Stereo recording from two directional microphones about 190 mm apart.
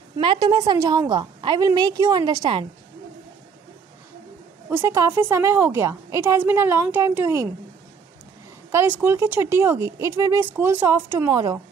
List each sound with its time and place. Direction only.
0.2 s a woman's voice: 25° right (ahead or behind)
4.6 s speech: 10° right (ahead or behind)
8.7 s speech: 10° right (ahead or behind)